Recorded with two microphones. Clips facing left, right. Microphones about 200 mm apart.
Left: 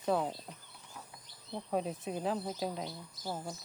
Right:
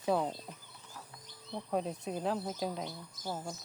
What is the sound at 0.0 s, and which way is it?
Speech, centre (ahead or behind).